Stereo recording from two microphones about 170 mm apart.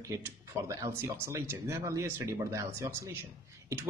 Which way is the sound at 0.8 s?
15° right (ahead or behind).